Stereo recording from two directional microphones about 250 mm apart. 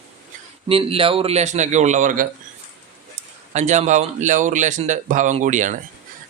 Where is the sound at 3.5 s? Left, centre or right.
Right.